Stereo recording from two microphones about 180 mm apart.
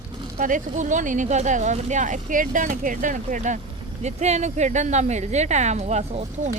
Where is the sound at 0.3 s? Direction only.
45° right (ahead or behind).